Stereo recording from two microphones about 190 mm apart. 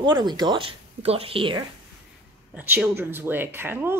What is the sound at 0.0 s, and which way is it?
Speech, 25° right (ahead or behind).